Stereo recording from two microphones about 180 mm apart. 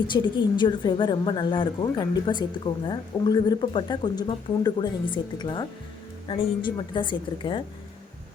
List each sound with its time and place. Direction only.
0.1 s a woman's voice: 25° left (ahead or behind)